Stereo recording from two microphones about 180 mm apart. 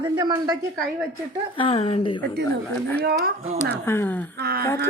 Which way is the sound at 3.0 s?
55° right (ahead or behind).